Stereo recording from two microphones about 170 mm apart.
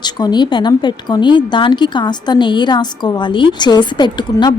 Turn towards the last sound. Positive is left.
turn(degrees=25)  # may be behind; listen again after turning